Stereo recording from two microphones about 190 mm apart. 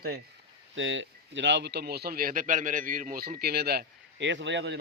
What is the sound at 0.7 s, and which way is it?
A man's voice, 80° right.